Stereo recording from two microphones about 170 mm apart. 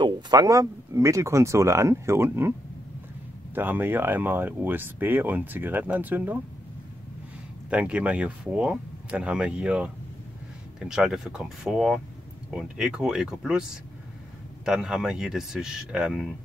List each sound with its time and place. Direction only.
0.0 s speech: 25° right (ahead or behind)
3.5 s speech: 10° right (ahead or behind)
7.7 s speech: 5° right (ahead or behind)